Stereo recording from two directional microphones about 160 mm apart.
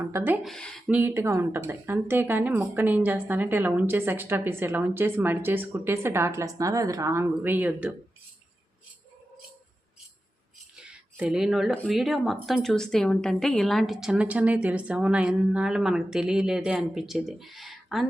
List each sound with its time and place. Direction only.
0.0 s speech: 15° right (ahead or behind)
0.4 s speech: 5° left (ahead or behind)
0.9 s speech: 10° right (ahead or behind)
10.8 s speech: 5° right (ahead or behind)